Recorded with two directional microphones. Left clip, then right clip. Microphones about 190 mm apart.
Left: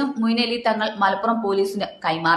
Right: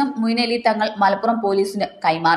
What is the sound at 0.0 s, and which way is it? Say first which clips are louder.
A woman's voice: right 2 dB; 10° right (ahead or behind).